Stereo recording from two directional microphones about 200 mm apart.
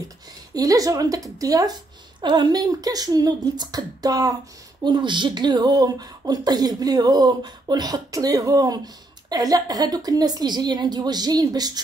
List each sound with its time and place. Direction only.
0.6 s a woman's voice: 15° right (ahead or behind)